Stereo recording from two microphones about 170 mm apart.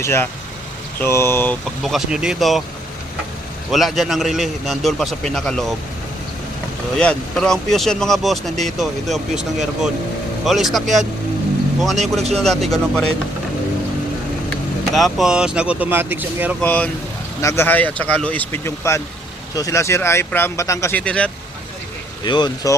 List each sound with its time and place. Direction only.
0.0 s speech: 15° left (ahead or behind)
1.6 s a man's voice: centre (ahead or behind)
3.7 s a man's voice: centre (ahead or behind)
6.9 s a man's voice: 5° left (ahead or behind)
14.9 s speech: centre (ahead or behind)
16.6 s speech: 10° left (ahead or behind)
21.0 s speech: 5° left (ahead or behind)
22.2 s speech: 25° left (ahead or behind)